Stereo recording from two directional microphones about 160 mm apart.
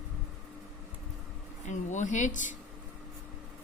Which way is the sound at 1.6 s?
50° left (ahead or behind).